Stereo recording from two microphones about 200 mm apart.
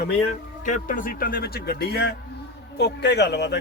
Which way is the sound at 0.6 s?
40° left (ahead or behind).